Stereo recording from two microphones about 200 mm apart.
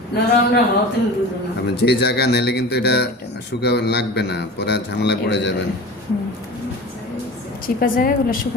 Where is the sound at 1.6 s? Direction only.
55° left (ahead or behind).